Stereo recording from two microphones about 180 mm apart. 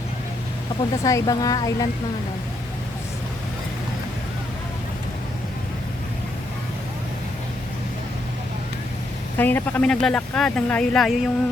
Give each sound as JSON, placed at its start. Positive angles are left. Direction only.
{"t": 1.0, "sound": "speech", "side_deg": 20}
{"t": 9.4, "sound": "speech", "side_deg": 10}